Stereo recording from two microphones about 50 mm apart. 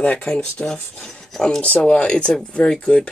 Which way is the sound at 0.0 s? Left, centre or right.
Left.